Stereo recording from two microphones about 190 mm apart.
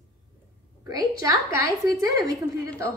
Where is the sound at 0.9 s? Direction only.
20° right (ahead or behind).